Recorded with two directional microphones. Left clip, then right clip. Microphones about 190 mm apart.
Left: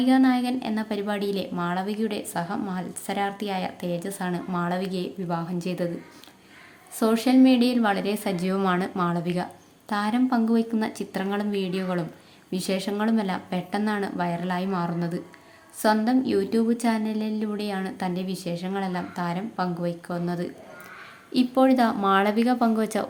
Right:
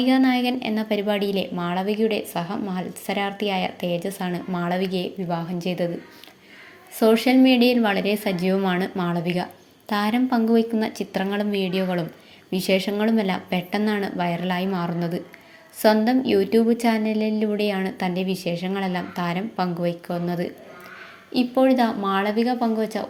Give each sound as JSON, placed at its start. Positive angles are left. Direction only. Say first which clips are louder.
{"t": 0.0, "sound": "a woman's voice", "louder": "right 2 dB", "side_deg": -5}
{"t": 7.0, "sound": "a woman's voice", "louder": "right 3 dB", "side_deg": -5}
{"t": 21.3, "sound": "speech", "louder": "right 2 dB", "side_deg": 5}